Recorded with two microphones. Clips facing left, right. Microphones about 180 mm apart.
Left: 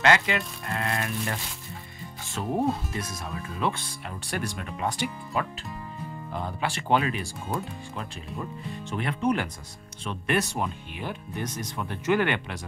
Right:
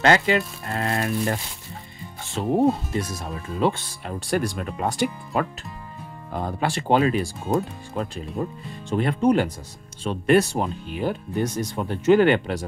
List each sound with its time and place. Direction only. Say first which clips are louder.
0.0 s speech: right 4 dB; 35° right (ahead or behind)
2.6 s speech: right 7 dB; 25° right (ahead or behind)